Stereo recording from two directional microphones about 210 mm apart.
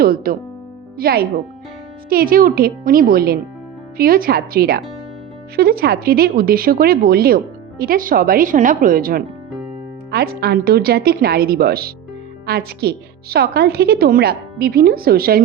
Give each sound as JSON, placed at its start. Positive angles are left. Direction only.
{"t": 0.0, "sound": "speech", "side_deg": -45}